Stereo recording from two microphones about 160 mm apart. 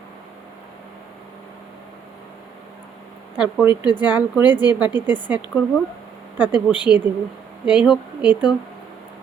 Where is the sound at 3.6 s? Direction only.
15° right (ahead or behind).